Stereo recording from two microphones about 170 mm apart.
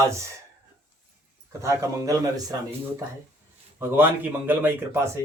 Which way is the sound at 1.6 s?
15° right (ahead or behind).